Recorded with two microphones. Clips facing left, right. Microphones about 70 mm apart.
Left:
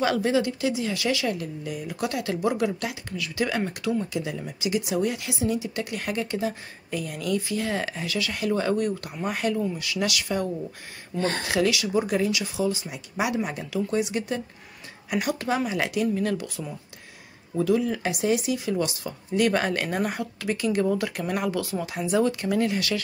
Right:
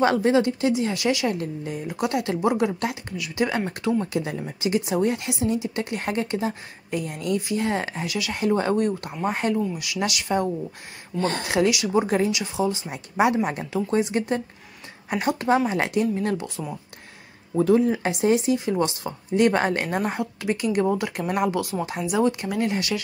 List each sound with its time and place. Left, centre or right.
0.0 s speech: right
4.0 s speech: right
17.6 s speech: right